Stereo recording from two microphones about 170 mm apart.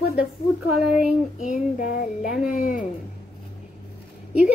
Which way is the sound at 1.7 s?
50° left (ahead or behind).